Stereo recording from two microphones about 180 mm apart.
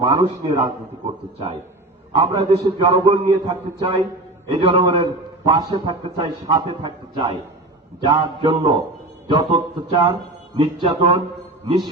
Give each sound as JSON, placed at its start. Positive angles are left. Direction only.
{"t": 0.0, "sound": "a man's voice", "side_deg": -30}